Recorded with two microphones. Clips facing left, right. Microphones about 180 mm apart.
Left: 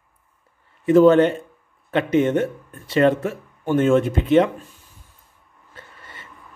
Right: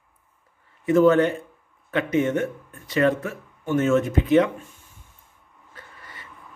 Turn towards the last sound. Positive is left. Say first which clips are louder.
# left 1 dB
turn(degrees=25)  # may be behind; listen again after turning